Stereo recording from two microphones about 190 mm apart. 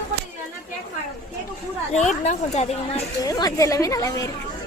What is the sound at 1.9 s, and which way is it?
Speech, 40° left (ahead or behind).